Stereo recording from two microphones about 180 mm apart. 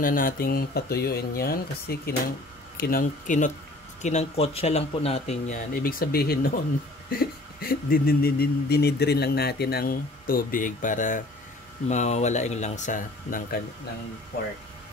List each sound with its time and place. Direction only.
0.0 s speech: 50° left (ahead or behind)